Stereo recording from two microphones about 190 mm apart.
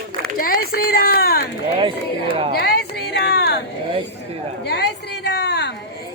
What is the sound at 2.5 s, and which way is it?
Speech, 60° left (ahead or behind).